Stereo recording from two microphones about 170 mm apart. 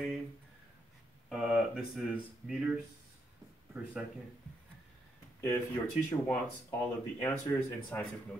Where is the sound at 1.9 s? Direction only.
5° right (ahead or behind).